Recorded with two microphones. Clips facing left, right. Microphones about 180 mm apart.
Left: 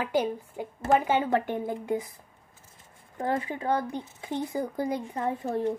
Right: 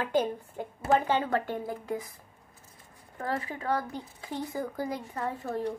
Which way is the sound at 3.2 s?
20° left (ahead or behind).